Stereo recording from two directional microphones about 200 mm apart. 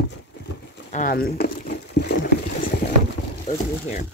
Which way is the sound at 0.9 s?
45° left (ahead or behind).